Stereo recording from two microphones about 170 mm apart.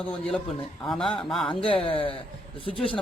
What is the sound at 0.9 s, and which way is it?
Speech, 5° left (ahead or behind).